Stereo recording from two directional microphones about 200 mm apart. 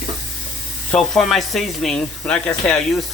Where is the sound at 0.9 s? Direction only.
Centre (ahead or behind).